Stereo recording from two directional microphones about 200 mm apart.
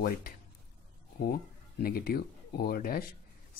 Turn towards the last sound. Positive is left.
turn(degrees=45)  # may be behind; listen again after turning